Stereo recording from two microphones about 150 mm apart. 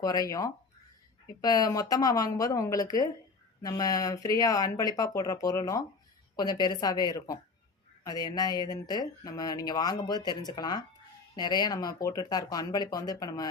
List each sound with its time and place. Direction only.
0.0 s speech: 25° left (ahead or behind)